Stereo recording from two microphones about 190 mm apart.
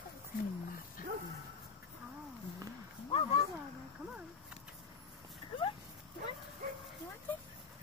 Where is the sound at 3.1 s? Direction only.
30° left (ahead or behind).